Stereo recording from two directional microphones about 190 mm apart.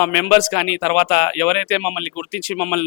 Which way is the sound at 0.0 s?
10° left (ahead or behind).